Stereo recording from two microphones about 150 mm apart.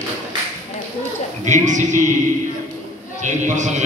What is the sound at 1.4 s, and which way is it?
Speech, 55° right (ahead or behind).